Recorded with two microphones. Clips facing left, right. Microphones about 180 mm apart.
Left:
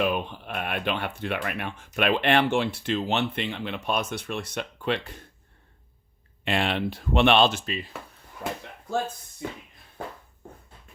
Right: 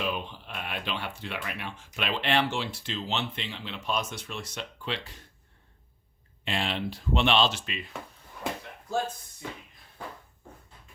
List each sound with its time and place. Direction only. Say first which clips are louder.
0.0 s speech: left 6 dB; 55° left (ahead or behind)
6.4 s speech: left 5 dB; 60° left (ahead or behind)
7.6 s speech: left 5 dB; 35° left (ahead or behind)